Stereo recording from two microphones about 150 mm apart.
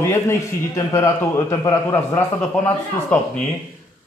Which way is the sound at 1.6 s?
20° left (ahead or behind).